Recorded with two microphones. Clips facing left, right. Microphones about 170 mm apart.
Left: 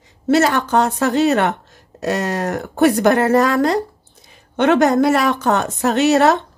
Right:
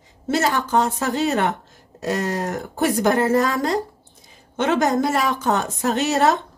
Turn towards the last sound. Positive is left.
turn(degrees=70)  # may be behind; listen again after turning